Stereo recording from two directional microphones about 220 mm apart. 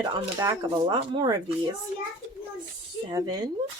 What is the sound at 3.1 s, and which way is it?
Speech, 15° right (ahead or behind).